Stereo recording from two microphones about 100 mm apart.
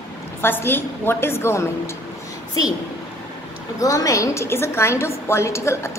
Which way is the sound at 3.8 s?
35° left (ahead or behind).